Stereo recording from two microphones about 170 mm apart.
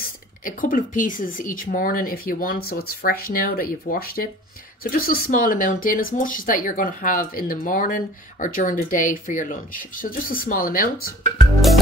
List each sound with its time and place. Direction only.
0.4 s speech: 55° left (ahead or behind)